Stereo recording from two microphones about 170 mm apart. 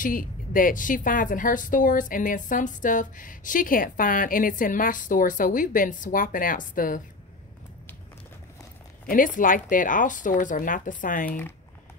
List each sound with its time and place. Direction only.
0.0 s a woman's voice: 55° left (ahead or behind)
9.0 s a woman's voice: 50° left (ahead or behind)